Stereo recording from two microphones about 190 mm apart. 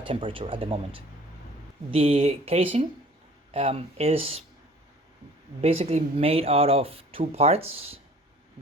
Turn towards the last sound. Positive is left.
turn(degrees=-30)  # may be behind; listen again after turning